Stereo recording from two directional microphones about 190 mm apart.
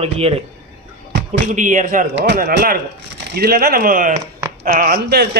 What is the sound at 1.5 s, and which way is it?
Speech, 40° right (ahead or behind).